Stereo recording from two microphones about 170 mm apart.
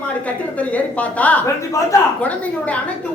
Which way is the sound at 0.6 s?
10° left (ahead or behind).